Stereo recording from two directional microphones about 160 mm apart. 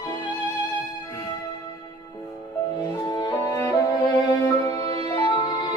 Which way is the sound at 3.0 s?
25° left (ahead or behind).